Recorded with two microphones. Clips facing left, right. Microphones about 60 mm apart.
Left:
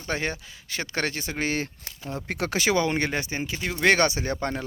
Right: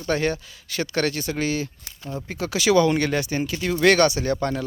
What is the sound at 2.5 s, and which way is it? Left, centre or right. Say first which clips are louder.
A man's voice: right 6 dB; left.